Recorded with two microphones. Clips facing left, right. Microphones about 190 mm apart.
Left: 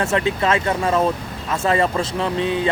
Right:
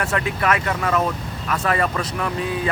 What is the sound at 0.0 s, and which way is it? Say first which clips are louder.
Speech: left 3 dB; 25° left (ahead or behind).